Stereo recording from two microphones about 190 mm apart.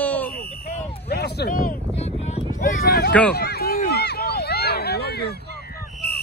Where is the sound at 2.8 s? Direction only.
55° left (ahead or behind).